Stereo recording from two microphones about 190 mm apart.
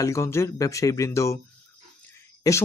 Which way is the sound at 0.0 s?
15° left (ahead or behind).